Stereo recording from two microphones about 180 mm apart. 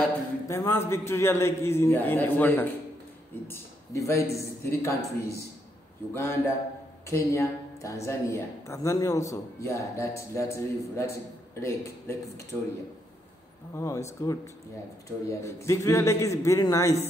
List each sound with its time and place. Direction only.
0.5 s a man's voice: 15° left (ahead or behind)
13.7 s a man's voice: 15° left (ahead or behind)